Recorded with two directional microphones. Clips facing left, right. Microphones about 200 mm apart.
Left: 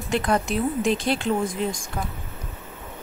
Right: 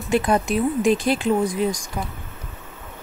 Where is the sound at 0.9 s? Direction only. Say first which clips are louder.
Right 3 dB; 25° left (ahead or behind).